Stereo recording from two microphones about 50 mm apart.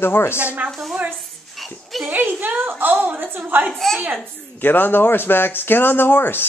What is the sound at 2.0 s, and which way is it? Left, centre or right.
A woman's voice, right.